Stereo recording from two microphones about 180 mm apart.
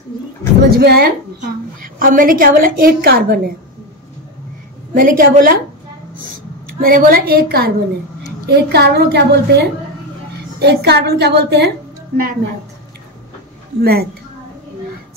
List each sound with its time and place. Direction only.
0.7 s a woman's voice: 60° right (ahead or behind)
4.9 s a woman's voice: 50° right (ahead or behind)
6.8 s a woman's voice: 55° right (ahead or behind)
13.7 s a woman's voice: 60° right (ahead or behind)